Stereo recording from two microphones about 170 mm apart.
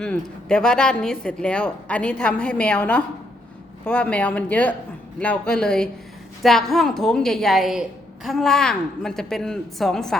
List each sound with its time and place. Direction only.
0.0 s a woman's voice: 5° left (ahead or behind)